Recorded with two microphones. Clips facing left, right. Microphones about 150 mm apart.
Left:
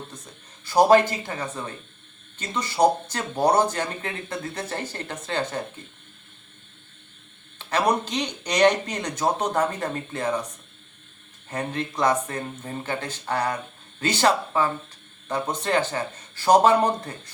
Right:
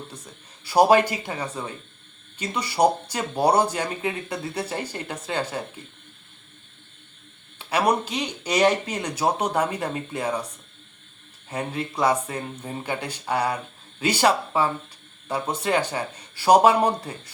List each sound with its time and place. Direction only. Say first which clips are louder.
0.6 s speech: even; 10° right (ahead or behind)
7.6 s speech: right 1 dB; 10° right (ahead or behind)
11.4 s speech: even; 10° right (ahead or behind)